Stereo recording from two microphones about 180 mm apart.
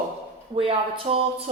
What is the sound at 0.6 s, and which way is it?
Speech, 30° right (ahead or behind).